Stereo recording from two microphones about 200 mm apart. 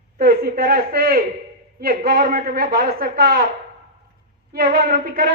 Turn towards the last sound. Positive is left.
turn(degrees=-50)  # may be behind; listen again after turning